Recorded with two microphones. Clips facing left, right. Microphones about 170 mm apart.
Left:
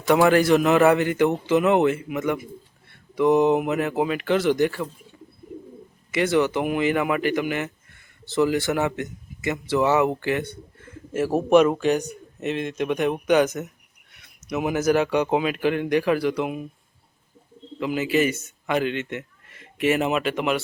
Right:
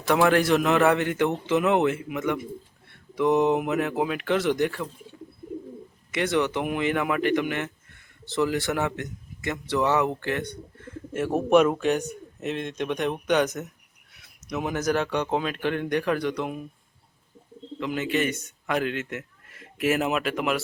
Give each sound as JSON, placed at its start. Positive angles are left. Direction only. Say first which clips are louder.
{"t": 0.1, "sound": "speech", "louder": "left 3 dB", "side_deg": 0}
{"t": 6.1, "sound": "speech", "louder": "left 4 dB", "side_deg": 0}
{"t": 17.7, "sound": "a man's voice", "louder": "left 4 dB", "side_deg": 5}